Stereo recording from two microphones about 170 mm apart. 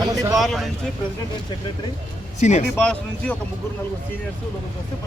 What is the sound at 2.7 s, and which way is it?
Speech, 5° left (ahead or behind).